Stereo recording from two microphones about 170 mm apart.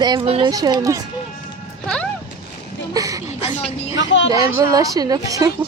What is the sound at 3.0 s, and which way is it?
Speech, 20° right (ahead or behind).